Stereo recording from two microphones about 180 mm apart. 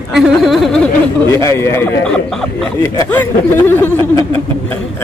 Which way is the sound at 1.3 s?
15° left (ahead or behind).